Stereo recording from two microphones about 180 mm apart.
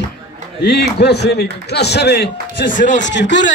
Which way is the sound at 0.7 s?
65° left (ahead or behind).